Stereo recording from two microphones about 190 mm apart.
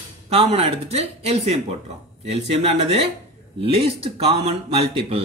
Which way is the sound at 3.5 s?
30° right (ahead or behind).